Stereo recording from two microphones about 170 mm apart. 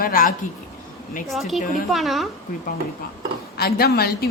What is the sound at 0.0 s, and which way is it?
Speech, 55° left (ahead or behind).